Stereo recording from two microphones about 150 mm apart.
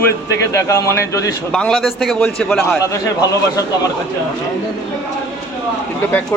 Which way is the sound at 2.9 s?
25° left (ahead or behind).